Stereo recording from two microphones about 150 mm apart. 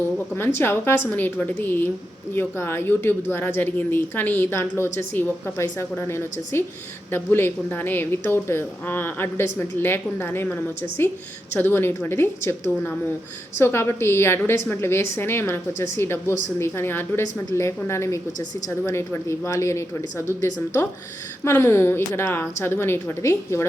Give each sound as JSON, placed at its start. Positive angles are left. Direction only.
{"t": 0.3, "sound": "a woman's voice", "side_deg": 15}
{"t": 21.4, "sound": "a woman's voice", "side_deg": 15}